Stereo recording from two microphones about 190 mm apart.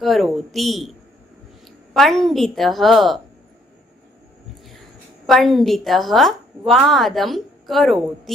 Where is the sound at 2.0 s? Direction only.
Centre (ahead or behind).